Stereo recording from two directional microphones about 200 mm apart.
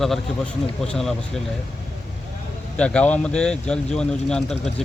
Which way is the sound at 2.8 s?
5° left (ahead or behind).